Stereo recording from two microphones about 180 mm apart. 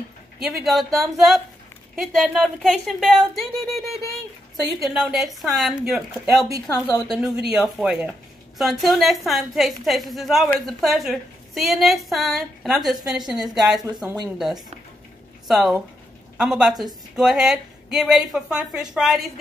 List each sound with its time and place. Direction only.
0.4 s a woman's voice: centre (ahead or behind)
15.4 s a woman's voice: centre (ahead or behind)